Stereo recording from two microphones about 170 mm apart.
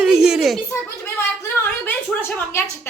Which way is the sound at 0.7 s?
15° left (ahead or behind).